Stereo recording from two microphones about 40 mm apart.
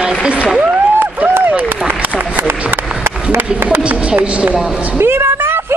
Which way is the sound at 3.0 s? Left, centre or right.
Right.